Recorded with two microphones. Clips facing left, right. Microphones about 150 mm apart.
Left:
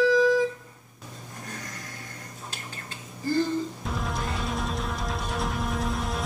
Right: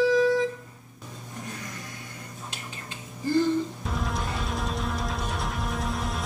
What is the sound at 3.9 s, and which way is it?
Music, centre (ahead or behind).